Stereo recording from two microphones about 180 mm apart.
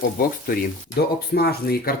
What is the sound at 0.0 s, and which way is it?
Speech, 55° left (ahead or behind).